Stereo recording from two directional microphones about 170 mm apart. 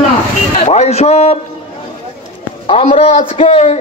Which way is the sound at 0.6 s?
40° left (ahead or behind).